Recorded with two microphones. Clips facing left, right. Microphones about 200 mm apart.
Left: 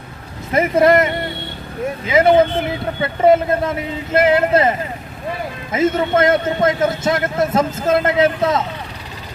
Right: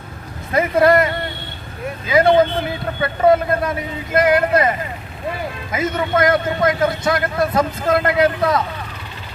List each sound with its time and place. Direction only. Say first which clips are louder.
0.5 s a man's voice: left 1 dB; 20° left (ahead or behind)
5.7 s a man's voice: left 4 dB; 25° left (ahead or behind)